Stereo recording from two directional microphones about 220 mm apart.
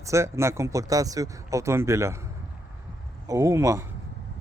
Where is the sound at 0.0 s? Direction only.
15° right (ahead or behind).